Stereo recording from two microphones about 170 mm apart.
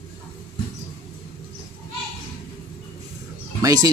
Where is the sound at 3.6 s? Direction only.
20° right (ahead or behind).